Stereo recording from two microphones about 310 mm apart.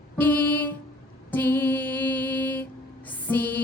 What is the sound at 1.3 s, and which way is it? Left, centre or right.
Mantra, centre.